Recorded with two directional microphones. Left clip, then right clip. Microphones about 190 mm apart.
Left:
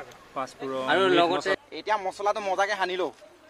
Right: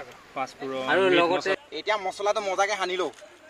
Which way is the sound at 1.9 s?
15° left (ahead or behind).